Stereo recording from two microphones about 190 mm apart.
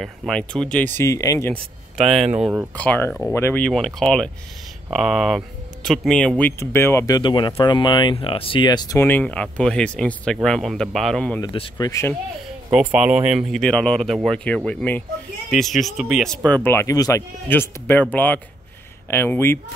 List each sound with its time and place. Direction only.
0.0 s speech: 5° left (ahead or behind)
1.5 s speech: centre (ahead or behind)
2.8 s speech: 5° left (ahead or behind)
11.4 s speech: 25° left (ahead or behind)
12.7 s speech: 5° right (ahead or behind); by 19.6 s 15° left (ahead or behind)